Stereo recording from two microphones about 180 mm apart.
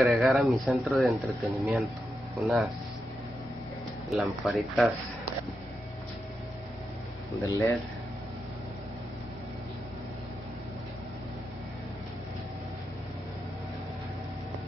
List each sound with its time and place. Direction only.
0.0 s speech: centre (ahead or behind)
4.1 s speech: centre (ahead or behind)
7.3 s speech: 15° left (ahead or behind)